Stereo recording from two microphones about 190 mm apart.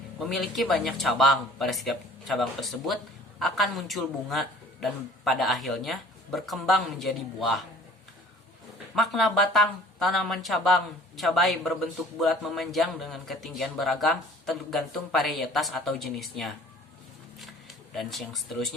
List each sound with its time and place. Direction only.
0.2 s a man's voice: centre (ahead or behind)
9.0 s a man's voice: centre (ahead or behind)
17.9 s a man's voice: centre (ahead or behind)